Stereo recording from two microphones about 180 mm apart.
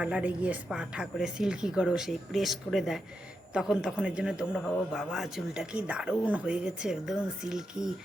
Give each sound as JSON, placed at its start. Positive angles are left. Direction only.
{"t": 0.0, "sound": "speech", "side_deg": -5}